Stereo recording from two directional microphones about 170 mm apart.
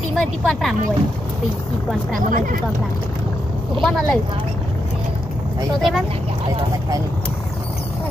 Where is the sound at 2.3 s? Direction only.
55° right (ahead or behind).